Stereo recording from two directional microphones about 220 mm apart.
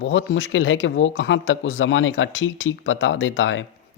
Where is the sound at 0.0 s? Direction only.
60° left (ahead or behind).